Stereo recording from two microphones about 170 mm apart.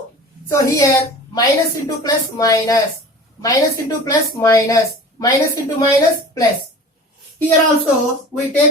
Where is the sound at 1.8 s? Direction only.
20° left (ahead or behind).